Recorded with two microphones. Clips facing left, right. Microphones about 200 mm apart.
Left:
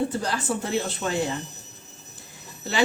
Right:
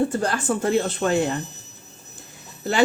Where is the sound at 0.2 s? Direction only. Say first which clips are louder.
Right 4 dB; 55° right (ahead or behind).